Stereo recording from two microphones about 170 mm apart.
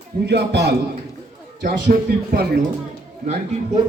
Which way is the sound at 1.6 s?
65° right (ahead or behind).